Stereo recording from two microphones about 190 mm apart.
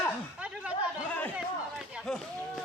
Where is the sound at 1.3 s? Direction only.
5° right (ahead or behind).